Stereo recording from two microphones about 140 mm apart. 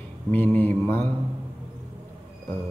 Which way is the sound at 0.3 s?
10° left (ahead or behind).